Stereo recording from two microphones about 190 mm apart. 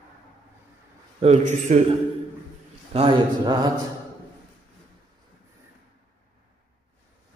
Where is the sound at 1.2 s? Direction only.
35° right (ahead or behind).